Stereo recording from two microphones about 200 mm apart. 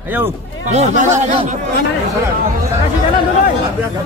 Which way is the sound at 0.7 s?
35° right (ahead or behind).